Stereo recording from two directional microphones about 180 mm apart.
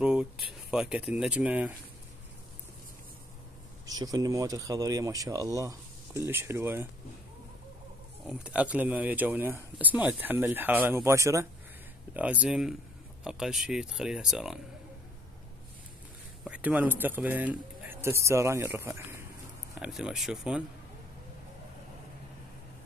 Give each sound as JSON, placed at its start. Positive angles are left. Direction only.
{"t": 0.0, "sound": "speech", "side_deg": -5}
{"t": 3.8, "sound": "speech", "side_deg": -20}
{"t": 8.3, "sound": "speech", "side_deg": -5}
{"t": 16.4, "sound": "speech", "side_deg": -10}
{"t": 19.8, "sound": "speech", "side_deg": -5}